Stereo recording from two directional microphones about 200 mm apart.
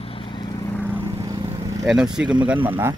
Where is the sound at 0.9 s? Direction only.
20° right (ahead or behind).